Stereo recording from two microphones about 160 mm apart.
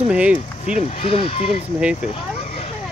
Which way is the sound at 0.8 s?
40° left (ahead or behind).